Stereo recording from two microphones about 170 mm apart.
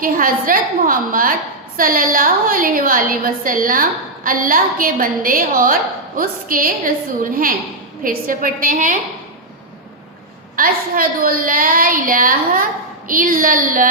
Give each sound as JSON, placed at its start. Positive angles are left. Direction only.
{"t": 0.0, "sound": "a woman's voice", "side_deg": -55}
{"t": 8.0, "sound": "a woman's voice", "side_deg": -55}
{"t": 10.6, "sound": "a woman's voice", "side_deg": -55}